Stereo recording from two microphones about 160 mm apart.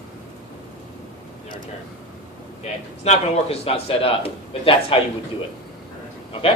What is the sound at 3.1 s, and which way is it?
A man's voice, 40° left (ahead or behind).